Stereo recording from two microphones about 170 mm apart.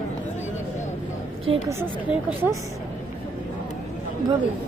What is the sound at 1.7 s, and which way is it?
Speech, 15° right (ahead or behind).